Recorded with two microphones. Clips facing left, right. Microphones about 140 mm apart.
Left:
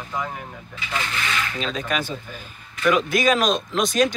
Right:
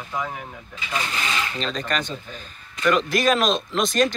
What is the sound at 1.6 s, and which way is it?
Speech, 5° left (ahead or behind).